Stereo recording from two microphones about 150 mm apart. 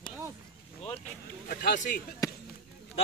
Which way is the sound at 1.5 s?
65° left (ahead or behind).